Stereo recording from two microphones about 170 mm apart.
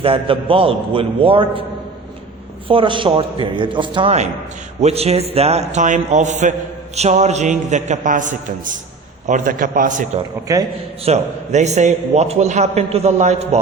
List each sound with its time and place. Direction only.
0.0 s a man's voice: 35° right (ahead or behind)
2.6 s a man's voice: 30° right (ahead or behind); by 10.1 s 50° right (ahead or behind)
11.0 s a man's voice: 40° right (ahead or behind)